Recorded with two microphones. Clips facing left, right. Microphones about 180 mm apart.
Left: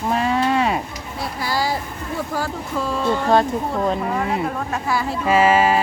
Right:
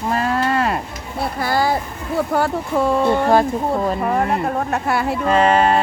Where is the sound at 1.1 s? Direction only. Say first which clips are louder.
Right 4 dB; 55° right (ahead or behind).